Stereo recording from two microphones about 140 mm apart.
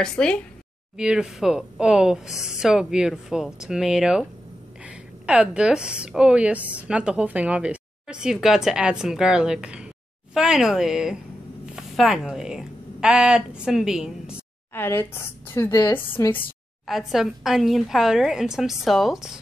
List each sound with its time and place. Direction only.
0.0 s speech: 5° left (ahead or behind)
0.9 s a woman's voice: 5° right (ahead or behind)
14.7 s a woman's voice: 15° left (ahead or behind)
16.8 s speech: centre (ahead or behind)